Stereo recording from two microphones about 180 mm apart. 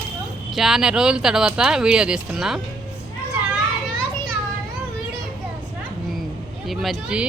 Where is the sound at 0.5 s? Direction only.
Centre (ahead or behind).